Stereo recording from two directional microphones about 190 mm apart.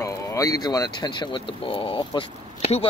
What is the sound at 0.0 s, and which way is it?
Speech, 15° left (ahead or behind).